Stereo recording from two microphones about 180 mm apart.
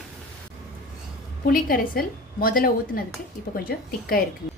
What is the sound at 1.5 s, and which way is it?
A woman's voice, 55° left (ahead or behind).